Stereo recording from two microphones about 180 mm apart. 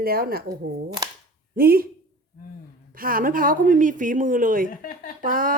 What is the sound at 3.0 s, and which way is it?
Speech, 50° right (ahead or behind).